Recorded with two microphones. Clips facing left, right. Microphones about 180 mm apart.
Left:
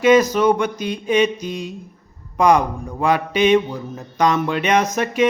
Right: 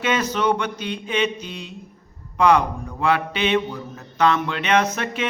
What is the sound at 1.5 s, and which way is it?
Mantra, 45° left (ahead or behind).